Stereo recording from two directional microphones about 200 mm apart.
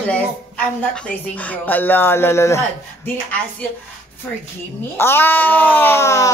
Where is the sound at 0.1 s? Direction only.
5° left (ahead or behind).